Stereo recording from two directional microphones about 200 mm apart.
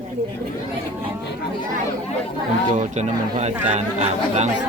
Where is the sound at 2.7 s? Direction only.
35° right (ahead or behind).